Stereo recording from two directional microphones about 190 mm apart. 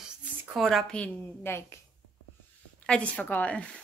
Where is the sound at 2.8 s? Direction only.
5° left (ahead or behind).